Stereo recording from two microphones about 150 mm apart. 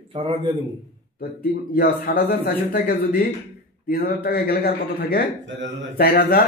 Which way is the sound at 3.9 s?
90° left.